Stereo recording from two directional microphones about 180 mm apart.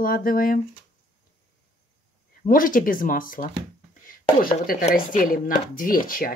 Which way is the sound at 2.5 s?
50° left (ahead or behind).